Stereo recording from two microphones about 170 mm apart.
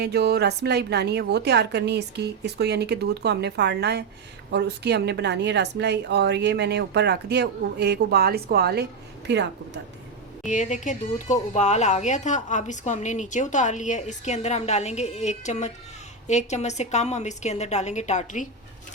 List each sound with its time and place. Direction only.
0.0 s a woman's voice: 75° right (ahead or behind)
10.4 s a woman's voice: 45° left (ahead or behind)